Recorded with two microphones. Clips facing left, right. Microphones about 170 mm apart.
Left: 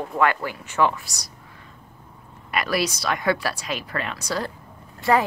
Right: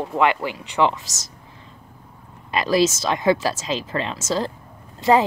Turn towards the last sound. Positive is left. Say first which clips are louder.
# right 3 dB
turn(degrees=-20)  # may be behind; listen again after turning